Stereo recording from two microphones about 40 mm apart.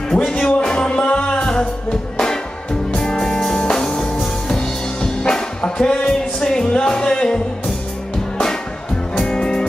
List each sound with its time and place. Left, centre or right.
0.4 s music: centre
2.1 s music: centre
9.1 s music: left